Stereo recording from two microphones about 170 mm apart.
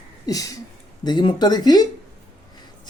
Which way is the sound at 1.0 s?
25° left (ahead or behind).